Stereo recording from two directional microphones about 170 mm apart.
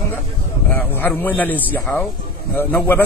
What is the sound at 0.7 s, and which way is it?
A man's voice, 10° left (ahead or behind).